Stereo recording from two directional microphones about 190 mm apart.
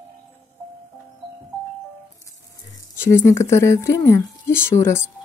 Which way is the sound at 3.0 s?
15° left (ahead or behind).